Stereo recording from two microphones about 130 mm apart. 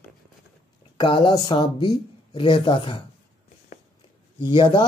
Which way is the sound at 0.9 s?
35° left (ahead or behind).